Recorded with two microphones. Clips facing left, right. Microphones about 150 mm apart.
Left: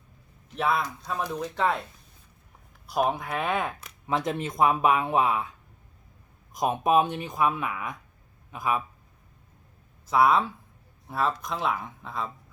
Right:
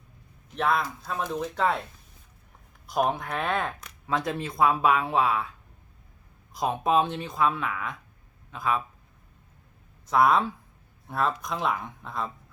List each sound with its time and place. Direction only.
0.5 s speech: 5° left (ahead or behind)
2.9 s speech: 5° left (ahead or behind); by 5.5 s 20° left (ahead or behind)
6.5 s speech: 20° left (ahead or behind)
10.1 s speech: 5° left (ahead or behind)